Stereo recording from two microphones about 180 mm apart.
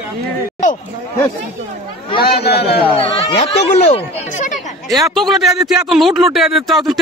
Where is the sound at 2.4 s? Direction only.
65° left (ahead or behind).